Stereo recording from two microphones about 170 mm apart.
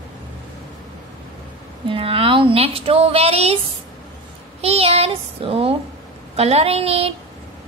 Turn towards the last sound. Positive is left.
turn(degrees=-35)  # may be behind; listen again after turning